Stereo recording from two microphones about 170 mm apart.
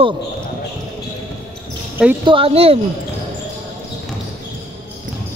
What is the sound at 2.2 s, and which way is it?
Speech, 30° right (ahead or behind).